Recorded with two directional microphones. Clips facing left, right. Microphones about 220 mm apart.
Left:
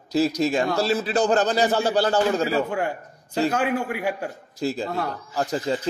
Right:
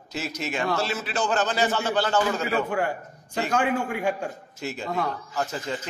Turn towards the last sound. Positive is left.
turn(degrees=35)  # may be behind; listen again after turning